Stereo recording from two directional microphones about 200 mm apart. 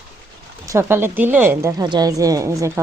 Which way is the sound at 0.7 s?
10° right (ahead or behind).